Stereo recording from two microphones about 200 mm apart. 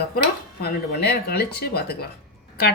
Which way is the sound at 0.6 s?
55° left (ahead or behind).